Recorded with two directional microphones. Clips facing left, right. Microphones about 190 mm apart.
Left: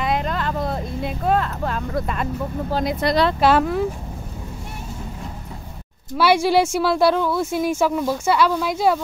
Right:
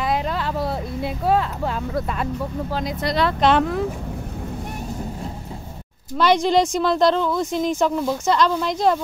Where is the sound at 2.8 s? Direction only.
60° left (ahead or behind).